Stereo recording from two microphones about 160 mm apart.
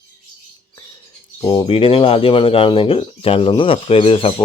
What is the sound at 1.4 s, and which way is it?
Speech, 30° left (ahead or behind).